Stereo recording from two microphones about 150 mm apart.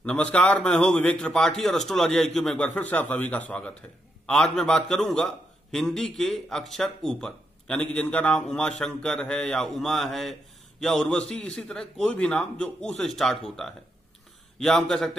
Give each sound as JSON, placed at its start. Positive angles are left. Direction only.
{"t": 0.0, "sound": "a man's voice", "side_deg": 5}